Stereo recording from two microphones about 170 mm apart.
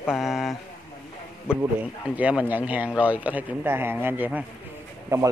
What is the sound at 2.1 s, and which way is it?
A man's voice, 10° right (ahead or behind).